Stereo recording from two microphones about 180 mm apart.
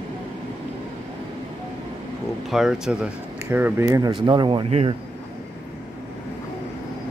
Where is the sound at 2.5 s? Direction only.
5° right (ahead or behind); by 4.9 s 35° right (ahead or behind).